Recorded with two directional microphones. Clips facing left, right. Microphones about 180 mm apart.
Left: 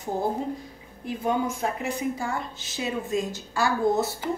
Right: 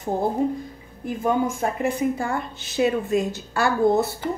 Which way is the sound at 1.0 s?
50° right (ahead or behind).